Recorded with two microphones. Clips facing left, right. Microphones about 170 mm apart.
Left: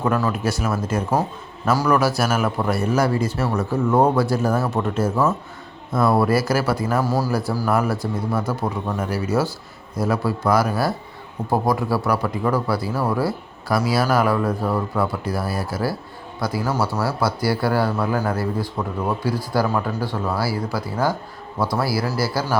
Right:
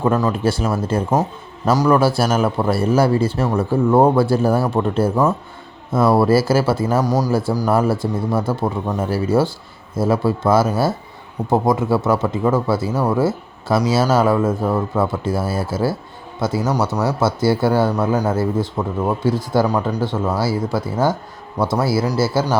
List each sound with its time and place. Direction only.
0.0 s speech: 25° right (ahead or behind)